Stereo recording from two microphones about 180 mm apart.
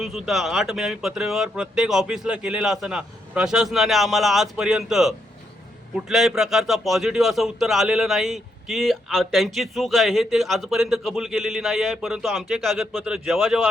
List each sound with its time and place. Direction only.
0.0 s a man's voice: centre (ahead or behind)